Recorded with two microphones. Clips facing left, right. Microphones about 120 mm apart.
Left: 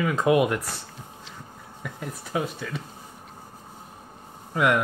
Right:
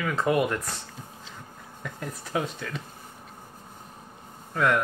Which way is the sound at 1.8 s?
5° left (ahead or behind).